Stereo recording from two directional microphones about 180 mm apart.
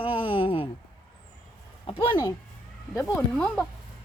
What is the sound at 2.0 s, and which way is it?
Speech, 25° left (ahead or behind).